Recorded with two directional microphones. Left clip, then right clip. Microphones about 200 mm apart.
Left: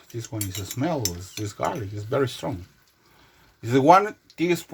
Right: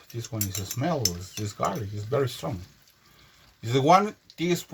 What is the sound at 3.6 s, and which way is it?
Speech, 30° left (ahead or behind).